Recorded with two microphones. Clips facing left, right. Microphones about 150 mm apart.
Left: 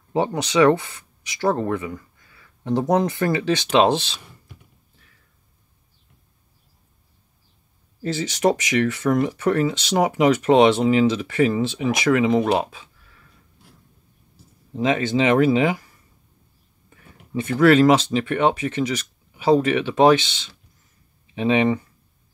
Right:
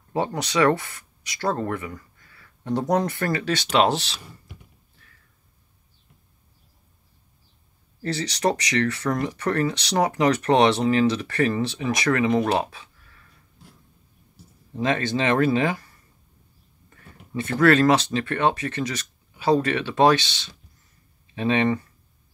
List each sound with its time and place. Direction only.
0.1 s speech: 15° left (ahead or behind)
2.3 s a sound: 20° left (ahead or behind)
2.9 s speech: 20° left (ahead or behind)
8.0 s speech: 20° left (ahead or behind)
14.7 s speech: 20° left (ahead or behind)
16.9 s speech: 15° left (ahead or behind)
21.4 s speech: 15° left (ahead or behind)